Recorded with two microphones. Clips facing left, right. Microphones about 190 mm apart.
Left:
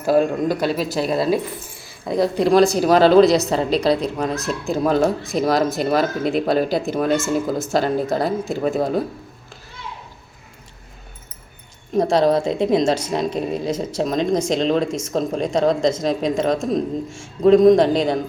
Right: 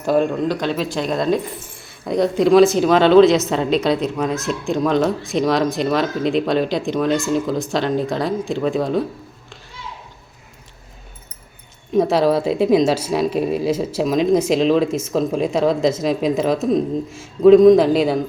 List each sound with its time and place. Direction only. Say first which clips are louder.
0.0 s a man's voice: even; 5° left (ahead or behind)
11.9 s a woman's voice: right 1 dB; 5° right (ahead or behind)